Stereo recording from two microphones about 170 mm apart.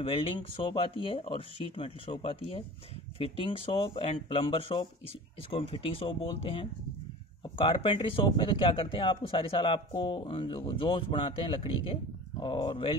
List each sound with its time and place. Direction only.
0.0 s speech: 30° left (ahead or behind)